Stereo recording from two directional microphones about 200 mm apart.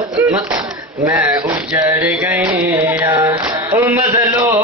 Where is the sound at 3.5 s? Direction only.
10° right (ahead or behind).